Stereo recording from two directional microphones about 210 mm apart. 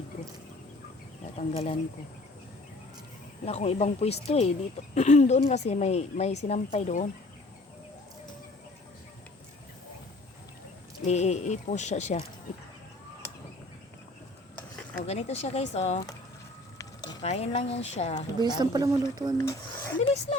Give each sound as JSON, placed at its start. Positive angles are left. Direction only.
{"t": 1.4, "sound": "speech", "side_deg": 30}
{"t": 3.4, "sound": "a woman's voice", "side_deg": 30}
{"t": 11.0, "sound": "a woman's voice", "side_deg": 30}
{"t": 15.0, "sound": "a woman's voice", "side_deg": 30}
{"t": 17.2, "sound": "a woman's voice", "side_deg": 30}
{"t": 18.3, "sound": "a woman's voice", "side_deg": -20}
{"t": 19.4, "sound": "speech", "side_deg": 10}